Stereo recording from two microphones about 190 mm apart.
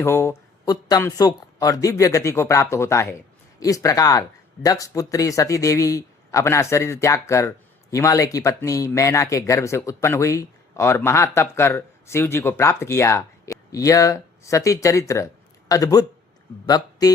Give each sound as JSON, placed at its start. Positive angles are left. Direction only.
{"t": 0.0, "sound": "a man's voice", "side_deg": 15}